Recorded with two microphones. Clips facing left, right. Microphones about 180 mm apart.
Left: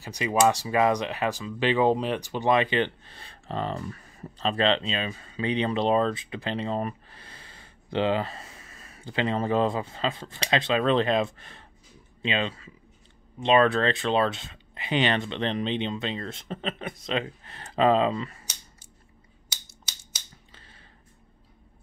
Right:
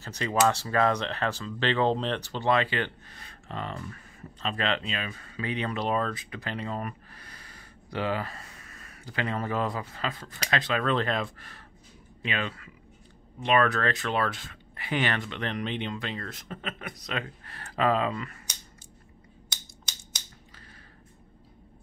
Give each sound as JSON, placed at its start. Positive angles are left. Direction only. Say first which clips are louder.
{"t": 0.0, "sound": "speech", "louder": "left 3 dB", "side_deg": 15}
{"t": 19.5, "sound": "scissors", "louder": "left 1 dB", "side_deg": 5}